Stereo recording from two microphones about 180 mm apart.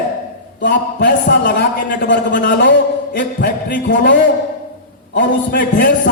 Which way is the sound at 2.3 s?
50° left (ahead or behind).